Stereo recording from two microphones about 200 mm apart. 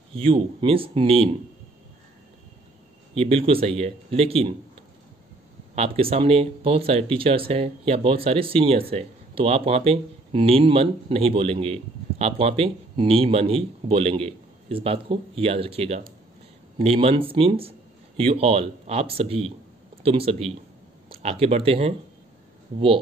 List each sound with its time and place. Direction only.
0.1 s speech: 30° right (ahead or behind)
3.2 s speech: 30° right (ahead or behind)
5.8 s speech: 30° right (ahead or behind)